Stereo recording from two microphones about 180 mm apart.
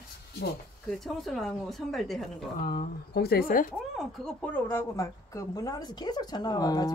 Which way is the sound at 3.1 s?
60° left (ahead or behind).